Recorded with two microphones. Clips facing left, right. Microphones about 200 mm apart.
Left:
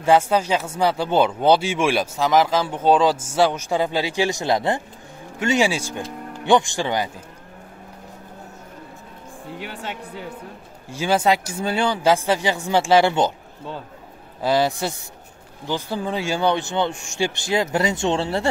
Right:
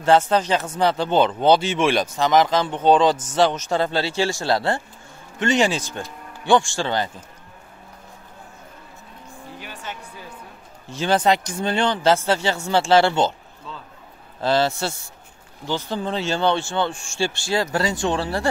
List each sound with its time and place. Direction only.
0.0 s speech: 10° left (ahead or behind)
5.4 s speech: 5° left (ahead or behind)
9.6 s speech: 65° left (ahead or behind)
10.9 s speech: 10° left (ahead or behind)
14.4 s a man's voice: 15° left (ahead or behind)